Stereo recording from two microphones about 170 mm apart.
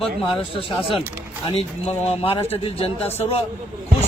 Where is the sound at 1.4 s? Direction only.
40° left (ahead or behind).